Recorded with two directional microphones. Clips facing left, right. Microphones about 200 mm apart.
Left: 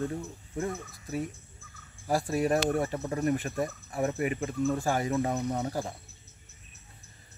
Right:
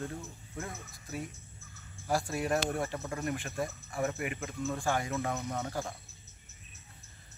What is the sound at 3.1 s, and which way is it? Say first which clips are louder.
Speech: left 7 dB; 35° left (ahead or behind).